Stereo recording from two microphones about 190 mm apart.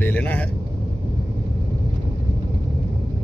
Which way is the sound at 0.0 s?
10° left (ahead or behind).